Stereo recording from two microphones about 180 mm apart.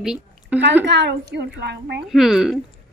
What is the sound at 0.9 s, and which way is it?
A woman's voice, 70° right (ahead or behind).